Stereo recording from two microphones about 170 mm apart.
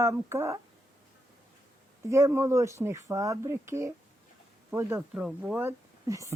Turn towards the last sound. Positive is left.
turn(degrees=-20)  # may be behind; listen again after turning